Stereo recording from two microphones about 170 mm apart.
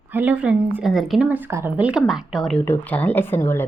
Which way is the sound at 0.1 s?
10° right (ahead or behind).